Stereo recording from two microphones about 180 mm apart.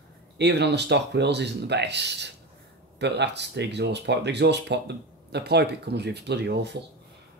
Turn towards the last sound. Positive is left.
turn(degrees=-70)  # may be behind; listen again after turning